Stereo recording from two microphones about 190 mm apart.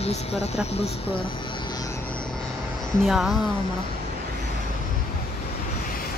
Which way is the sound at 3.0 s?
Centre (ahead or behind).